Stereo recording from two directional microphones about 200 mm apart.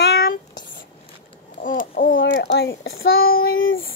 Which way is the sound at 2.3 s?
55° left (ahead or behind).